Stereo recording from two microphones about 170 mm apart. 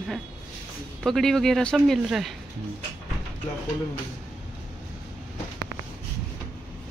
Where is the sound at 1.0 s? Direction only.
Centre (ahead or behind).